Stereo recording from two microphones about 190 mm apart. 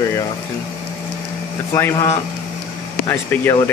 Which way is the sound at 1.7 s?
15° left (ahead or behind).